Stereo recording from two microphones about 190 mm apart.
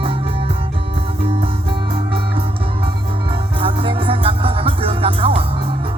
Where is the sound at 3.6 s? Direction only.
30° right (ahead or behind).